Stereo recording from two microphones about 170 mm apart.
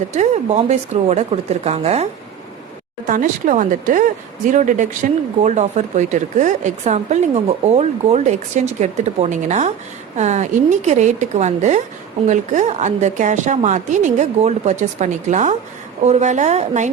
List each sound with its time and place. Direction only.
0.1 s speech: 45° right (ahead or behind)
3.1 s speech: 50° right (ahead or behind)